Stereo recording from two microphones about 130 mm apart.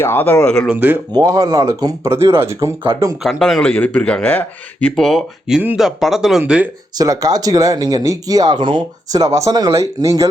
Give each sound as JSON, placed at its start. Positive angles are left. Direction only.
{"t": 0.0, "sound": "speech", "side_deg": 15}
{"t": 0.7, "sound": "speech", "side_deg": -15}
{"t": 1.1, "sound": "speech", "side_deg": -25}
{"t": 3.2, "sound": "speech", "side_deg": 0}
{"t": 3.8, "sound": "speech", "side_deg": 10}
{"t": 6.9, "sound": "speech", "side_deg": -25}